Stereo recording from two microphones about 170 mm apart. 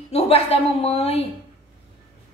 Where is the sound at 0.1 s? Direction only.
35° left (ahead or behind).